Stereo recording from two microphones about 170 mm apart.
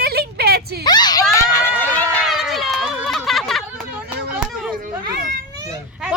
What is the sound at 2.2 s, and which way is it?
Run, centre (ahead or behind).